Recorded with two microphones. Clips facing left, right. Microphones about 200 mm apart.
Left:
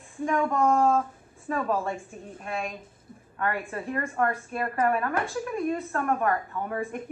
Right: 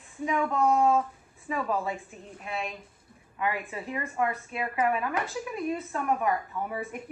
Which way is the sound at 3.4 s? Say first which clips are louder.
Left 2 dB; centre (ahead or behind).